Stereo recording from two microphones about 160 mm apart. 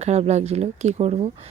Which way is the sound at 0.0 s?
45° right (ahead or behind).